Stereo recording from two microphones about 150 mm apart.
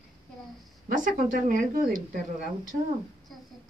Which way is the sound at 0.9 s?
60° right (ahead or behind).